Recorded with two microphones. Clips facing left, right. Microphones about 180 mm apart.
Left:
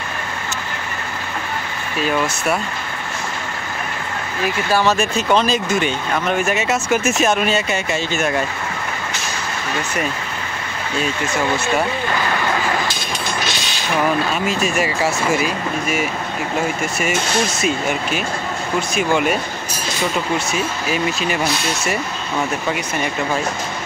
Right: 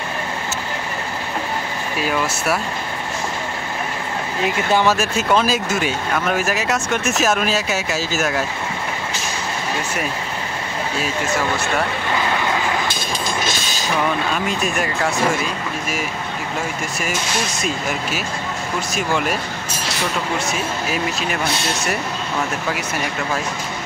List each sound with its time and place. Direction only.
2.0 s speech: 5° right (ahead or behind)
4.4 s speech: 20° right (ahead or behind)
4.8 s speech: 5° right (ahead or behind)
14.3 s speech: centre (ahead or behind)
17.6 s speech: centre (ahead or behind)
20.5 s speech: centre (ahead or behind)